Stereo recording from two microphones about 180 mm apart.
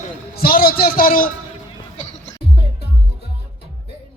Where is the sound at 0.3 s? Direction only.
55° left (ahead or behind).